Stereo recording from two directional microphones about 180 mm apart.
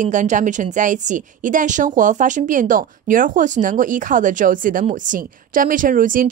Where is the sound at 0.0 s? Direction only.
45° right (ahead or behind).